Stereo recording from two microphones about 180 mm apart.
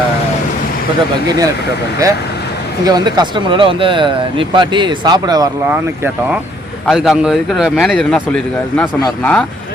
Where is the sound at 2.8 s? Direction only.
25° right (ahead or behind).